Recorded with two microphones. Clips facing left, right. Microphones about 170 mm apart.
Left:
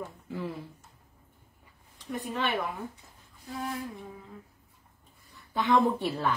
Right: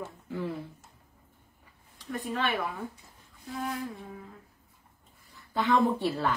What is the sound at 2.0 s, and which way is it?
Speech, 20° left (ahead or behind).